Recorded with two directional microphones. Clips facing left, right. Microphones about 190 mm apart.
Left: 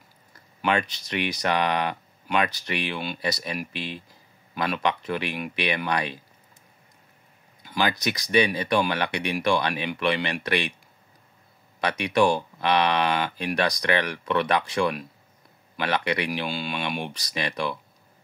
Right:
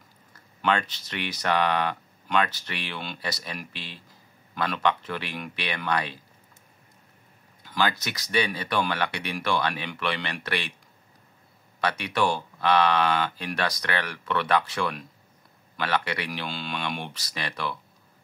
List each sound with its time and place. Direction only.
0.6 s speech: 15° left (ahead or behind)
7.6 s speech: 15° left (ahead or behind)
11.8 s speech: 15° left (ahead or behind)